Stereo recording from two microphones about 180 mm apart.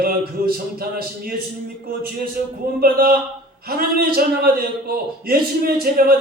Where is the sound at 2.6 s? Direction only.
55° right (ahead or behind).